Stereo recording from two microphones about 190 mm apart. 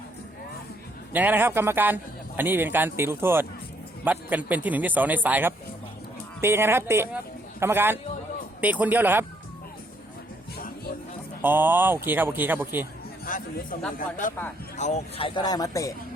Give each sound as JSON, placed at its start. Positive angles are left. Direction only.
{"t": 1.1, "sound": "a man's voice", "side_deg": -10}
{"t": 11.4, "sound": "a man's voice", "side_deg": -10}
{"t": 13.2, "sound": "a sound", "side_deg": 45}
{"t": 14.0, "sound": "a man's voice", "side_deg": 45}